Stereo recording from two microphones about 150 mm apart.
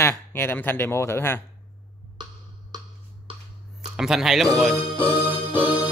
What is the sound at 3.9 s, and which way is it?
Speech, 5° right (ahead or behind).